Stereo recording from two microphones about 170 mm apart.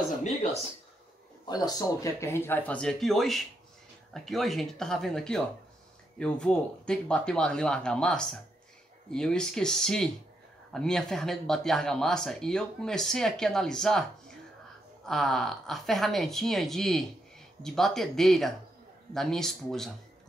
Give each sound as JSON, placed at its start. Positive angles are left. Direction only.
{"t": 0.2, "sound": "speech", "side_deg": 45}
{"t": 1.5, "sound": "speech", "side_deg": 20}